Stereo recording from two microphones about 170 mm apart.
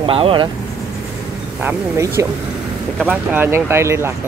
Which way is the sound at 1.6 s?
15° right (ahead or behind).